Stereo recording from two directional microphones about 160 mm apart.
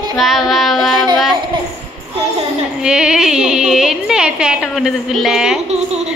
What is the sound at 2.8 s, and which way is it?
A woman's voice, 5° right (ahead or behind).